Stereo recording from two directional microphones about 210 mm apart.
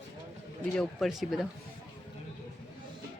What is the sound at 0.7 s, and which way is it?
Speech, centre (ahead or behind).